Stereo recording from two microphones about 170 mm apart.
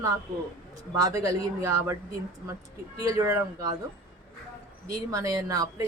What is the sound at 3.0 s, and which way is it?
Speech, 20° right (ahead or behind).